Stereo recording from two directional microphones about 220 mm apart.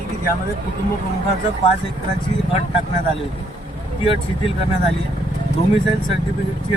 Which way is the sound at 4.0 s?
25° left (ahead or behind).